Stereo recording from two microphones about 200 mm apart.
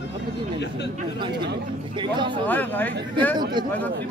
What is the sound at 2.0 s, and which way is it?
Speech, 25° right (ahead or behind).